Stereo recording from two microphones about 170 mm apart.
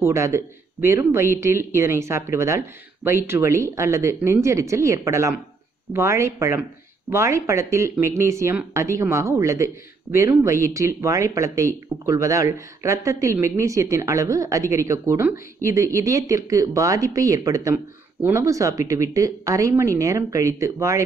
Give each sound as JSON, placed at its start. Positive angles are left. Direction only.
{"t": 0.0, "sound": "speech", "side_deg": -15}